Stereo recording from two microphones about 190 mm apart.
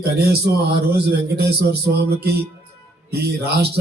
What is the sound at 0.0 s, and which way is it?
Speech, 55° right (ahead or behind).